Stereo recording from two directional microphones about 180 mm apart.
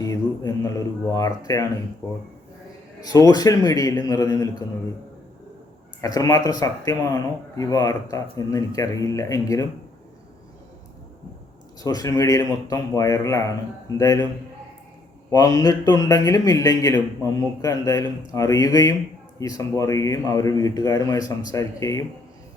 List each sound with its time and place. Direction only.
0.0 s a sound: 20° left (ahead or behind)
1.1 s speech: 20° left (ahead or behind)
3.0 s speech: 20° left (ahead or behind)
6.0 s speech: 20° left (ahead or behind)
11.8 s speech: 20° left (ahead or behind)
15.3 s speech: 20° left (ahead or behind)